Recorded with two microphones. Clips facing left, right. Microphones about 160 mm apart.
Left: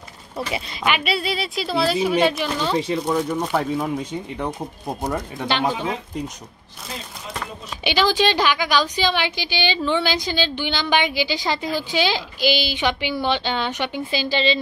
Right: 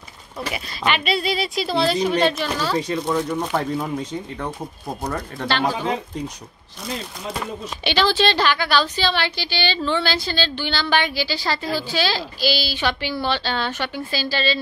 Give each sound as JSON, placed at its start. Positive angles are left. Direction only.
{"t": 0.8, "sound": "a woman's voice", "side_deg": 10}
{"t": 3.1, "sound": "a woman's voice", "side_deg": 10}
{"t": 4.5, "sound": "a woman's voice", "side_deg": 20}
{"t": 7.8, "sound": "a woman's voice", "side_deg": 10}